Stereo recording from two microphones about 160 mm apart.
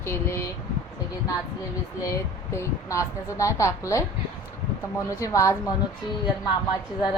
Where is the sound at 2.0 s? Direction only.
20° left (ahead or behind).